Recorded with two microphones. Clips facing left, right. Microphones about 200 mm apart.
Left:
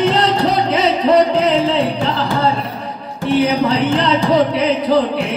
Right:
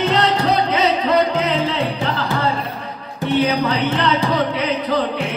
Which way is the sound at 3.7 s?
30° left (ahead or behind).